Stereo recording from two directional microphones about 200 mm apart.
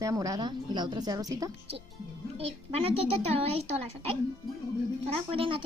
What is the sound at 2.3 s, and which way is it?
A woman's voice, 30° right (ahead or behind).